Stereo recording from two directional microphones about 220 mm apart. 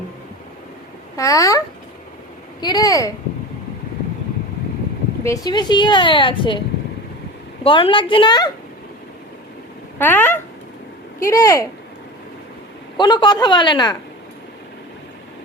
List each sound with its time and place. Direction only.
1.1 s speech: 15° left (ahead or behind)
5.2 s a woman's voice: 15° left (ahead or behind)
7.6 s a woman's voice: 25° left (ahead or behind)
10.0 s speech: 10° left (ahead or behind)
13.0 s a woman's voice: 20° left (ahead or behind)